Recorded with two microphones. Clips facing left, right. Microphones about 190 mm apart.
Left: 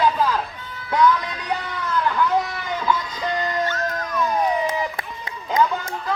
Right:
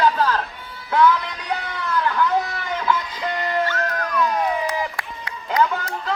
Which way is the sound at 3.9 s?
25° left (ahead or behind).